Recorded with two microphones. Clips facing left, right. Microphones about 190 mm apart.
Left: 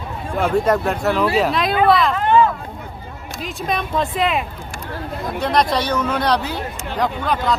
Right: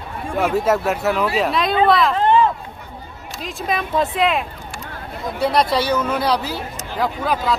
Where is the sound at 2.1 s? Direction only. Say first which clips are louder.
Right 1 dB; 30° right (ahead or behind).